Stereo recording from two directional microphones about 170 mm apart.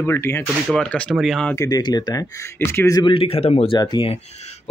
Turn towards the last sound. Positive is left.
turn(degrees=40)  # may be behind; listen again after turning